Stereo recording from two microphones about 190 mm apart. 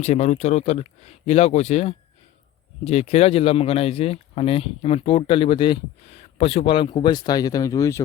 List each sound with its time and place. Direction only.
0.0 s speech: 35° left (ahead or behind); by 8.0 s 15° left (ahead or behind)